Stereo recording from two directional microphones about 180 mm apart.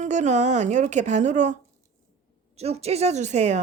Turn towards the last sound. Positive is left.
turn(degrees=-40)  # may be behind; listen again after turning